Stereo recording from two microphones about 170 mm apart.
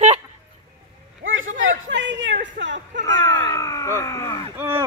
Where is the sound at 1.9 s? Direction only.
90° right.